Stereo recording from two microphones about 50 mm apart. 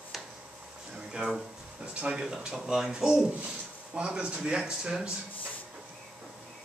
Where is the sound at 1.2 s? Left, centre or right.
Right.